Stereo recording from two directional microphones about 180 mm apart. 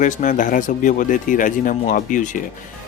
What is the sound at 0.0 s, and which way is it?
Speech, 45° left (ahead or behind).